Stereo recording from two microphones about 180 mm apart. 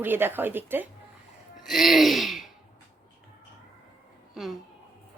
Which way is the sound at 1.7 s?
Centre (ahead or behind).